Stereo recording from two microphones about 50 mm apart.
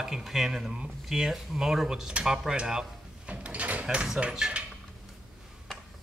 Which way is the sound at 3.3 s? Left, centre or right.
Right.